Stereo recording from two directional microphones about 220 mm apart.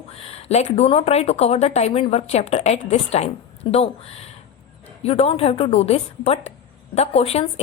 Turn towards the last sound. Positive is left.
turn(degrees=30)  # may be behind; listen again after turning